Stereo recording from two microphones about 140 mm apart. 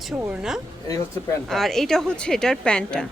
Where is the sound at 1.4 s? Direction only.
Centre (ahead or behind).